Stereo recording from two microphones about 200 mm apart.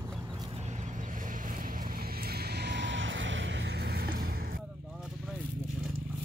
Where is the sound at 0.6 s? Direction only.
35° right (ahead or behind).